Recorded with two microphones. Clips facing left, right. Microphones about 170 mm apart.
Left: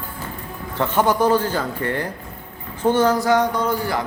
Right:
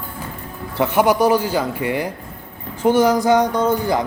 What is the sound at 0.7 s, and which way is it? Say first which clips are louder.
A man's voice: right 3 dB; 10° right (ahead or behind).